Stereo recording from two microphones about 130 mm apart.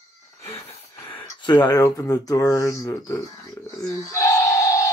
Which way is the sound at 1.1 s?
35° left (ahead or behind).